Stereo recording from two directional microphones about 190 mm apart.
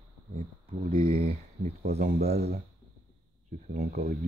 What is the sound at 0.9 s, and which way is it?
Speech, 50° right (ahead or behind).